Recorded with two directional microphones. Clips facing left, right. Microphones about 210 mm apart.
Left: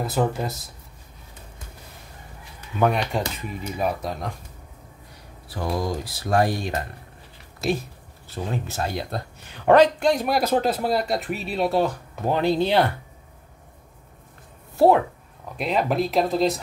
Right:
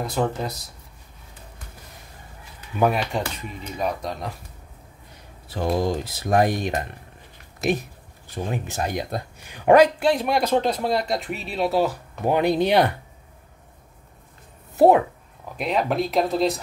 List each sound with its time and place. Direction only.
0.0 s speech: 5° left (ahead or behind)
2.8 s speech: 5° right (ahead or behind)
5.5 s speech: 25° right (ahead or behind)
14.8 s speech: 20° right (ahead or behind)
15.5 s speech: centre (ahead or behind)